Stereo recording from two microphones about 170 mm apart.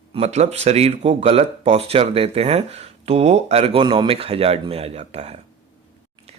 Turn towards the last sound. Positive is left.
turn(degrees=-40)  # may be behind; listen again after turning